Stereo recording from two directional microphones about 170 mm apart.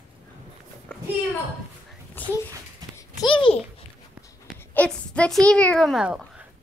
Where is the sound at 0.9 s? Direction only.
5° left (ahead or behind).